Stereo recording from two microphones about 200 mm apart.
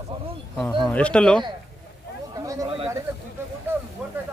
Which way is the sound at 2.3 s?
15° right (ahead or behind).